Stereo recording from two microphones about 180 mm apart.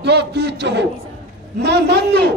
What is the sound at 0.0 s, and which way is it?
A man's voice, 70° right (ahead or behind).